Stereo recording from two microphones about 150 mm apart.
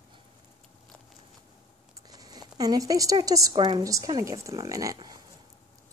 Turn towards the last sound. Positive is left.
turn(degrees=-25)  # may be behind; listen again after turning